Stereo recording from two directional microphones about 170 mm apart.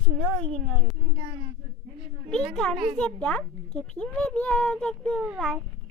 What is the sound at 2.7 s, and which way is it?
Speech, 25° right (ahead or behind).